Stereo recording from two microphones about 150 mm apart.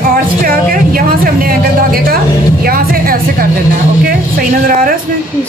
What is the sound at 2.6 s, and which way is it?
Music, 80° right.